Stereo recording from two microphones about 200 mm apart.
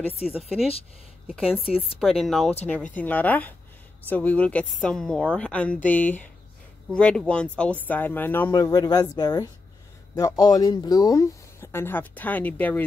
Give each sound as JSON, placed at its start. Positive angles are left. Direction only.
{"t": 0.3, "sound": "a woman's voice", "side_deg": 0}